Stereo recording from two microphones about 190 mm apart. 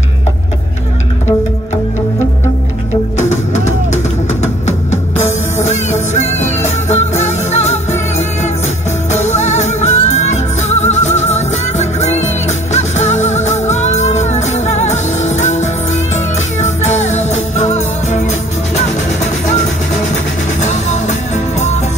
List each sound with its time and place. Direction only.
3.2 s music: 35° left (ahead or behind)